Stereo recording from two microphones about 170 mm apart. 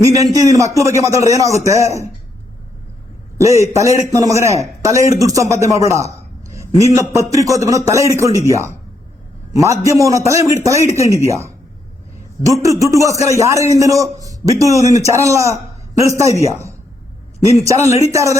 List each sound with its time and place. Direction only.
0.2 s a man's voice: 20° right (ahead or behind)
3.3 s a man's voice: 20° right (ahead or behind)
5.9 s a sound: 20° right (ahead or behind)
6.7 s a man's voice: 20° right (ahead or behind)
9.8 s a man's voice: 20° right (ahead or behind)
12.6 s a man's voice: 20° right (ahead or behind)